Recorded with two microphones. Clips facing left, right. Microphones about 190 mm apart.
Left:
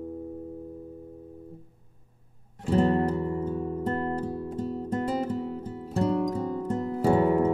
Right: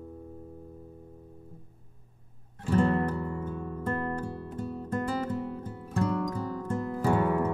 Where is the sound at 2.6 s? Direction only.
25° left (ahead or behind).